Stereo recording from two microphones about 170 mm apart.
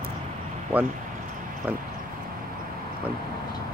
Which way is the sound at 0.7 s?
10° right (ahead or behind).